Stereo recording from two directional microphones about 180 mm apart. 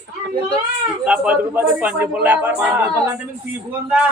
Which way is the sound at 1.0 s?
5° right (ahead or behind).